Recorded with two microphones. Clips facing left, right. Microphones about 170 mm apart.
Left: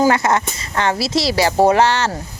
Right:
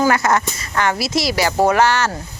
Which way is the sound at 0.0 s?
30° left (ahead or behind).